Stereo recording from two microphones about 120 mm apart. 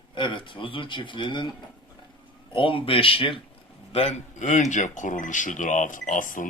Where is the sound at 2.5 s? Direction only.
45° left (ahead or behind).